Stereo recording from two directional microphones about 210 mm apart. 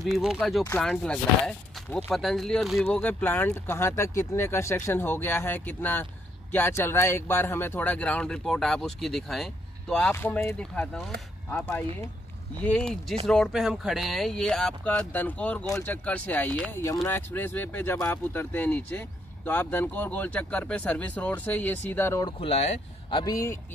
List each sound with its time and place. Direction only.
0.0 s speech: centre (ahead or behind)
22.4 s speech: 30° left (ahead or behind)